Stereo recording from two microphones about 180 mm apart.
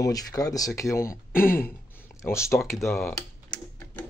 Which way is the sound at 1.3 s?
50° left (ahead or behind).